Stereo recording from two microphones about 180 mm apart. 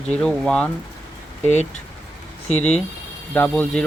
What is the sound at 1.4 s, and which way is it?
Speech, 40° left (ahead or behind).